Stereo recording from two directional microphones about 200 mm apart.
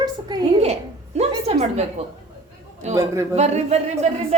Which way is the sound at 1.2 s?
30° right (ahead or behind).